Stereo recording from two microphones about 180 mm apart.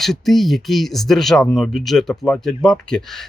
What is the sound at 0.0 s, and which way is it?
Speech, centre (ahead or behind).